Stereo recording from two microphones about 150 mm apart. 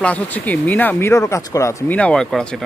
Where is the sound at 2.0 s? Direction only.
5° left (ahead or behind).